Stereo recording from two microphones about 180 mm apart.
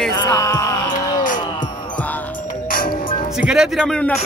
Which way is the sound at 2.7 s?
50° left (ahead or behind).